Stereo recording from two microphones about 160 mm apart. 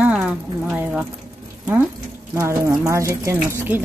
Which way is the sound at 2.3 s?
20° right (ahead or behind).